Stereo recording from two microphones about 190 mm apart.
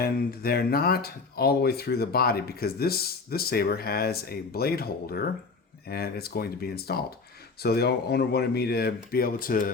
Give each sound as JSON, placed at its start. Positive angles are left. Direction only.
{"t": 0.0, "sound": "speech", "side_deg": 55}